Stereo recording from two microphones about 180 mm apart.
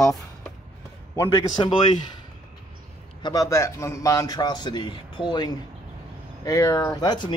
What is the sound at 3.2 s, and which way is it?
A man's voice, 20° left (ahead or behind).